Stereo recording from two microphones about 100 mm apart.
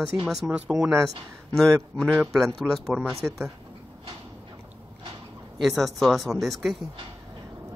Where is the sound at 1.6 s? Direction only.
5° left (ahead or behind).